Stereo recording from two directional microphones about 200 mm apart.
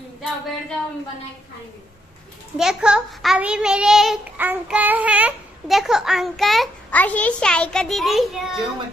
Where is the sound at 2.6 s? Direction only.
5° right (ahead or behind).